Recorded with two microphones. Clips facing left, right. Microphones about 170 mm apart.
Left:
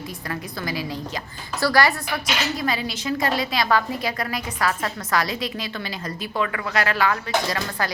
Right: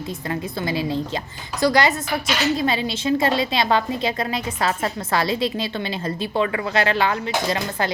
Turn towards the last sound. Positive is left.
turn(degrees=-25)  # may be behind; listen again after turning